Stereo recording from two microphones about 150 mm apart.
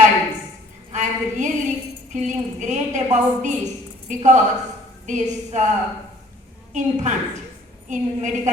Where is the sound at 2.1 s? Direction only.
55° right (ahead or behind).